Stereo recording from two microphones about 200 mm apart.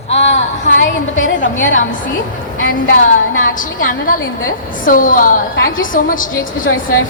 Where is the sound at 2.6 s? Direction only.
45° left (ahead or behind).